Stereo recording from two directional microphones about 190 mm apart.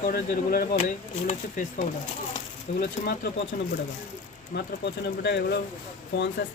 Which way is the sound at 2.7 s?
35° left (ahead or behind).